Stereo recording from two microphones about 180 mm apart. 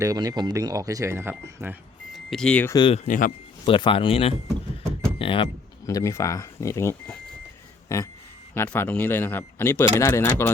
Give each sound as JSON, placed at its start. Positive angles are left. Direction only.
{"t": 0.0, "sound": "speech", "side_deg": -20}
{"t": 2.1, "sound": "speech", "side_deg": 5}
{"t": 2.7, "sound": "a man's voice", "side_deg": 25}
{"t": 3.0, "sound": "speech", "side_deg": 50}
{"t": 3.7, "sound": "a man's voice", "side_deg": 30}